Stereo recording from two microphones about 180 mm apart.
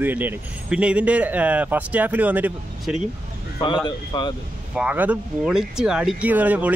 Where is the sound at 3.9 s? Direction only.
25° left (ahead or behind).